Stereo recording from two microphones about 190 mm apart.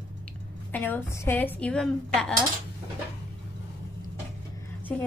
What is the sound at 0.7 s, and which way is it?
A woman's voice, 10° left (ahead or behind).